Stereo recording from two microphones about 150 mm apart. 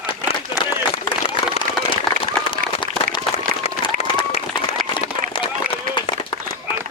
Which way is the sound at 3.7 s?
40° left (ahead or behind).